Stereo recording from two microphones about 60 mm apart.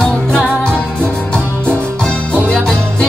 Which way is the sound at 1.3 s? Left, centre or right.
Left.